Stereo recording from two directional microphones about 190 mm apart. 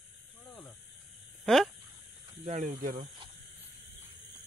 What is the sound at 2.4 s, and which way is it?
Speech, 40° right (ahead or behind).